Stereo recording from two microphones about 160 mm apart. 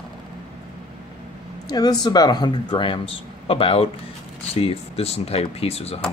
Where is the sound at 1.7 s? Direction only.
25° left (ahead or behind).